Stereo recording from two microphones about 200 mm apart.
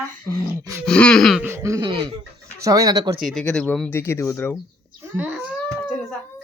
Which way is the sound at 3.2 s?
5° left (ahead or behind).